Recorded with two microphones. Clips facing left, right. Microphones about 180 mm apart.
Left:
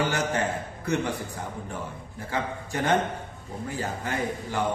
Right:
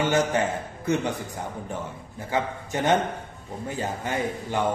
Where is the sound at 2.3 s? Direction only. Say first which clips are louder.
Right 3 dB; 15° right (ahead or behind).